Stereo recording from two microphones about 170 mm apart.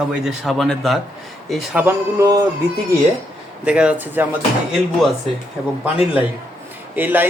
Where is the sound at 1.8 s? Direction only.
20° right (ahead or behind).